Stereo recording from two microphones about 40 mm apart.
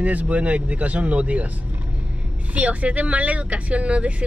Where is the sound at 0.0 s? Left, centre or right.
Right.